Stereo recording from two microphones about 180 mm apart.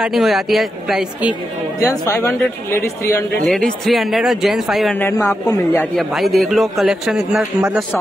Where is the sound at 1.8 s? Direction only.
15° left (ahead or behind).